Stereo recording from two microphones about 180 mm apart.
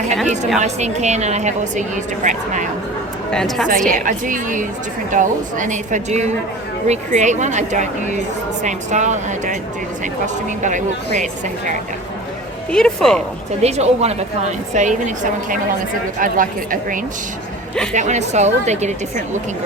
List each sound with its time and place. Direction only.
0.6 s a woman's voice: 40° right (ahead or behind)
3.3 s speech: 5° left (ahead or behind)
3.8 s a woman's voice: 45° right (ahead or behind)
10.6 s a woman's voice: 45° right (ahead or behind)
12.7 s speech: 5° left (ahead or behind)
13.6 s a woman's voice: 35° right (ahead or behind)